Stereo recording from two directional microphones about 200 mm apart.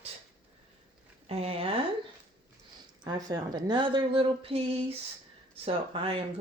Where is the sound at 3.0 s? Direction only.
20° right (ahead or behind).